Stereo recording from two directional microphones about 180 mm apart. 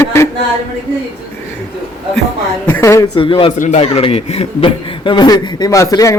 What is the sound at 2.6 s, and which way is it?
Speech, 15° left (ahead or behind).